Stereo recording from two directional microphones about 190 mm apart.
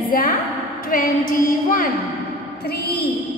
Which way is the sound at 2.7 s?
60° left (ahead or behind).